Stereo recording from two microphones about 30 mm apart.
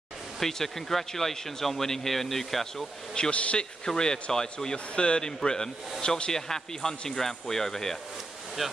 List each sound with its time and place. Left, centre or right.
0.4 s speech: centre
3.2 s speech: left
3.5 s speech: left
4.7 s speech: left
6.3 s speech: centre
8.6 s speech: centre